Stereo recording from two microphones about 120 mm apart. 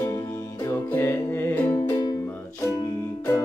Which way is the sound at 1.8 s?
30° left (ahead or behind).